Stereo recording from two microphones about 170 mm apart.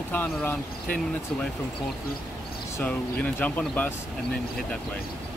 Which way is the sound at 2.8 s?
10° left (ahead or behind).